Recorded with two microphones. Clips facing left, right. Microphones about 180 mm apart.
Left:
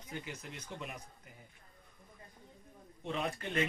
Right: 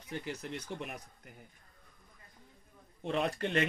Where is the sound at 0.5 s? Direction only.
65° right (ahead or behind).